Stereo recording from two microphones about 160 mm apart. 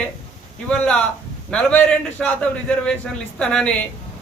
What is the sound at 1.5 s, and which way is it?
Speech, 5° left (ahead or behind).